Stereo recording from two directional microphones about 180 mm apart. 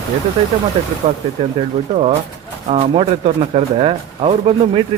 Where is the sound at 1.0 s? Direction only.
35° right (ahead or behind).